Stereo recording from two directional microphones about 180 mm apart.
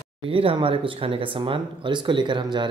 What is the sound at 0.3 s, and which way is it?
A man's voice, 30° right (ahead or behind).